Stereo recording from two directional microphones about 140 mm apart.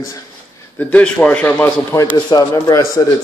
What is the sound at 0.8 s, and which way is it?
A man's voice, 10° left (ahead or behind).